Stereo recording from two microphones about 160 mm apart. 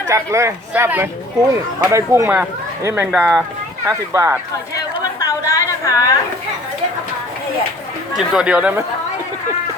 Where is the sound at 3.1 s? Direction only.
Centre (ahead or behind).